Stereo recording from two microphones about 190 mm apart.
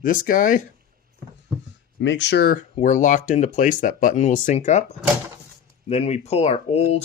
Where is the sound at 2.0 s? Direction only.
70° left (ahead or behind).